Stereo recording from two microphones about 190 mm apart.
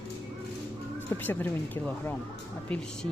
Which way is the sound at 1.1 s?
10° left (ahead or behind).